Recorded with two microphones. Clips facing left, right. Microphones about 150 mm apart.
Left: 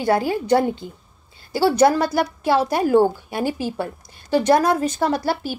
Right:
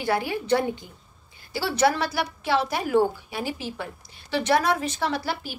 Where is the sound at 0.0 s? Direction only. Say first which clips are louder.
Left 6 dB; 40° left (ahead or behind).